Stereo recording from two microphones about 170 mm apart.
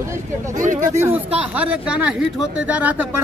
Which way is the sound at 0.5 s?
50° right (ahead or behind).